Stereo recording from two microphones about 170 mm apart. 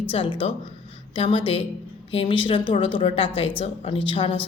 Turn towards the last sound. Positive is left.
turn(degrees=30)  # may be behind; listen again after turning